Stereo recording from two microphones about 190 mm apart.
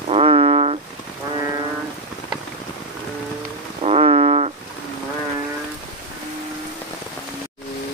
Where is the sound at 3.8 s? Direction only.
35° right (ahead or behind).